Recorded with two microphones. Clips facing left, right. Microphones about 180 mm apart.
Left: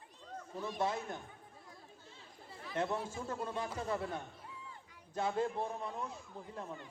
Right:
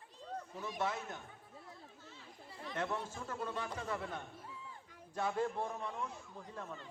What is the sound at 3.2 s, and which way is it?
A man's voice, 30° left (ahead or behind).